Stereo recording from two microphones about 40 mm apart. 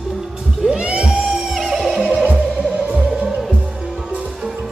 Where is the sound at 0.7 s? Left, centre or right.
Right.